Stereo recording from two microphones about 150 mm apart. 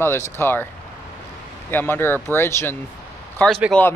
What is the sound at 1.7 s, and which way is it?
Speech, 15° left (ahead or behind).